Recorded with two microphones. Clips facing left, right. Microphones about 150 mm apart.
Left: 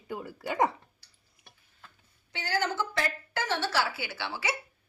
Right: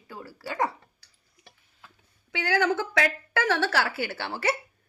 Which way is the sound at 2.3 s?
70° right (ahead or behind).